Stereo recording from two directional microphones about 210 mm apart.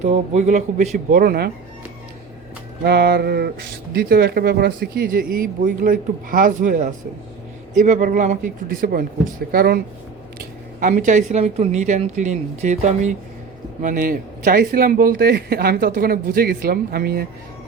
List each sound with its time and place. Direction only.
0.0 s speech: 35° right (ahead or behind)
2.8 s speech: 50° right (ahead or behind)